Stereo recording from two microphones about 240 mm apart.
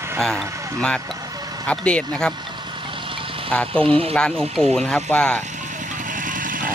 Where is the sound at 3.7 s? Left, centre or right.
Right.